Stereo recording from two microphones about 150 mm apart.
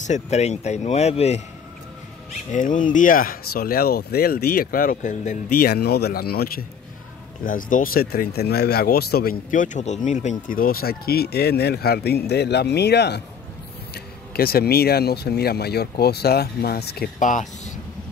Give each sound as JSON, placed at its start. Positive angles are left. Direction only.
{"t": 0.0, "sound": "speech", "side_deg": 50}
{"t": 2.5, "sound": "speech", "side_deg": 60}
{"t": 5.6, "sound": "speech", "side_deg": 90}
{"t": 7.4, "sound": "speech", "side_deg": 65}